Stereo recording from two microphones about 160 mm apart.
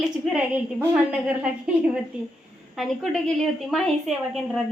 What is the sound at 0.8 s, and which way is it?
Speech, 15° right (ahead or behind).